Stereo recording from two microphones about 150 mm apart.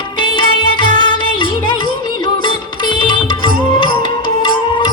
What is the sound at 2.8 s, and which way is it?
Music, 30° left (ahead or behind).